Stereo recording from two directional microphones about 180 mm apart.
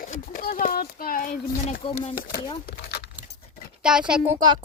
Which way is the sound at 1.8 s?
30° left (ahead or behind).